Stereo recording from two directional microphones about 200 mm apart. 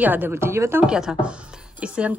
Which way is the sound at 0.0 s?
10° right (ahead or behind).